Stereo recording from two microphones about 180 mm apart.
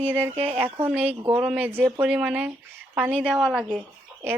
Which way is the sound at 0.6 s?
10° right (ahead or behind).